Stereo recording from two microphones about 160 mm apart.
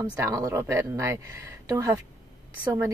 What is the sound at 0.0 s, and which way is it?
Speech, 20° right (ahead or behind).